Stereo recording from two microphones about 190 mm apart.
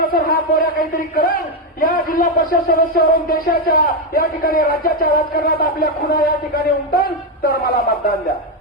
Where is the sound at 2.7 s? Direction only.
50° left (ahead or behind).